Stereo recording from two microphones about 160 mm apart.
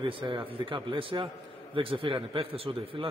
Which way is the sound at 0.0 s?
30° right (ahead or behind).